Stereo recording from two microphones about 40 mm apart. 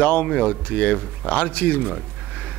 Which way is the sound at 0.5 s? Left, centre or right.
Left.